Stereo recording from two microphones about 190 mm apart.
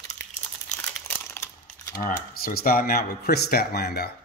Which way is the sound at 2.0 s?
50° left (ahead or behind).